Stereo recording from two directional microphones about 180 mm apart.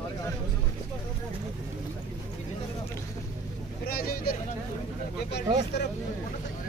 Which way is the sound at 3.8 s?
55° left (ahead or behind).